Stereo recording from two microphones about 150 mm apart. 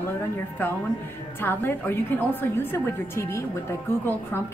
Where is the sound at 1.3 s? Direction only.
15° left (ahead or behind).